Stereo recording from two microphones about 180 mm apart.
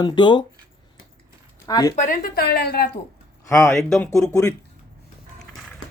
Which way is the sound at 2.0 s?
45° left (ahead or behind).